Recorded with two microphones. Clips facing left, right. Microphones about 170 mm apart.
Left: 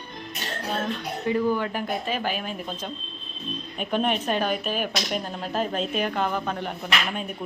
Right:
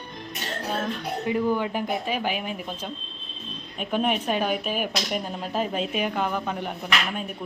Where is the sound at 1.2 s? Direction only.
15° right (ahead or behind).